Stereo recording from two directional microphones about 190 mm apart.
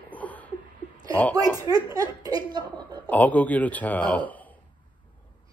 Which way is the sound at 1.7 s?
20° right (ahead or behind).